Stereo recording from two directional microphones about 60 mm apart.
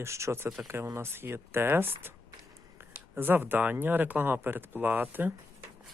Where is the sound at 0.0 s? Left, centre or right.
Right.